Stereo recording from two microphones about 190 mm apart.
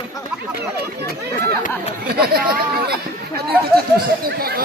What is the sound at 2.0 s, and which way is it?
Speech, 55° right (ahead or behind).